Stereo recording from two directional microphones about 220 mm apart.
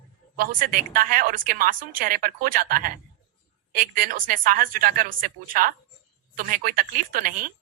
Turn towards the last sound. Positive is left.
turn(degrees=-40)  # may be behind; listen again after turning